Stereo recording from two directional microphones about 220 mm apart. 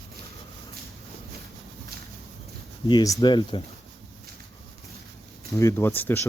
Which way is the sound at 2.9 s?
20° left (ahead or behind).